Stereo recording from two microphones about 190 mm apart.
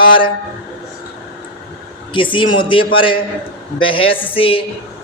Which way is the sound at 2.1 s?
25° left (ahead or behind).